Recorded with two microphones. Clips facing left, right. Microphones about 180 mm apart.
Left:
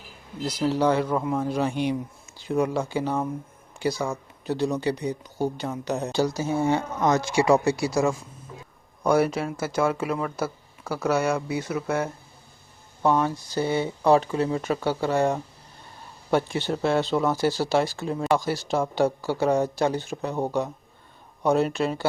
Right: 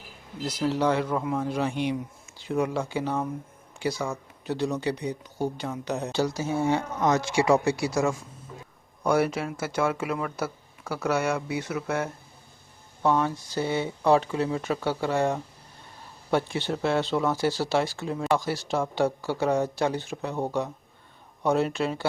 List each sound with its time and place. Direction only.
0.4 s speech: 35° left (ahead or behind)